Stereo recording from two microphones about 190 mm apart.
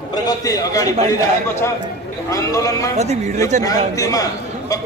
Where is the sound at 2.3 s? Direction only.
15° left (ahead or behind).